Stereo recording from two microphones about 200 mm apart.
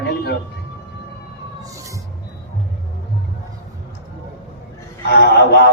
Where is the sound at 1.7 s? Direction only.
15° right (ahead or behind).